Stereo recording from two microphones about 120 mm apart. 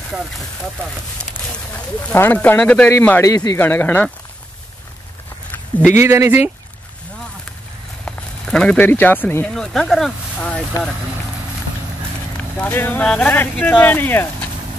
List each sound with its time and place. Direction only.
0.1 s speech: 10° right (ahead or behind)
2.1 s speech: 15° left (ahead or behind)
3.5 s speech: 20° left (ahead or behind)
5.9 s speech: 20° right (ahead or behind)
8.0 s a sound: 5° left (ahead or behind)
8.7 s speech: 15° left (ahead or behind)
9.5 s speech: 5° left (ahead or behind)
12.5 s speech: 15° left (ahead or behind)